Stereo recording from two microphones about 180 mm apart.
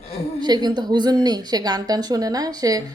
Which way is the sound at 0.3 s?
25° right (ahead or behind).